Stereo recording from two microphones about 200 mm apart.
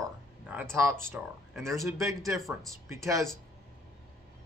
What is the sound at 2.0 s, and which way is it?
Speech, 15° right (ahead or behind).